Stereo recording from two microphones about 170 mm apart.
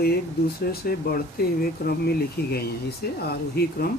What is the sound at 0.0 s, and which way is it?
Speech, 70° left (ahead or behind).